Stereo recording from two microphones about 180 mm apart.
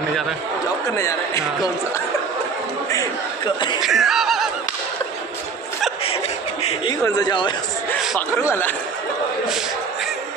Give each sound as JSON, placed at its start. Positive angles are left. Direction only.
{"t": 0.9, "sound": "a man's voice", "side_deg": 15}
{"t": 3.8, "sound": "a sound", "side_deg": 0}
{"t": 6.9, "sound": "speech", "side_deg": 20}
{"t": 8.4, "sound": "a man's voice", "side_deg": 15}